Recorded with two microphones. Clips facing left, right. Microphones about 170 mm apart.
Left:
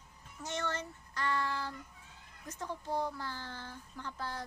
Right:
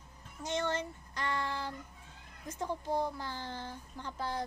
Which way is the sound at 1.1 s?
15° right (ahead or behind).